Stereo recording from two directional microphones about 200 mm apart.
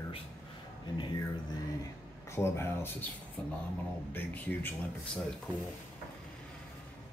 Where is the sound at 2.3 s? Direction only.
10° left (ahead or behind).